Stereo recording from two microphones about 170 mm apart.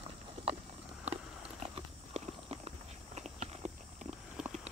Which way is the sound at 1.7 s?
35° right (ahead or behind).